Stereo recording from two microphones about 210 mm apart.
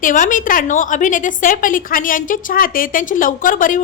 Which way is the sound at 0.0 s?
40° left (ahead or behind).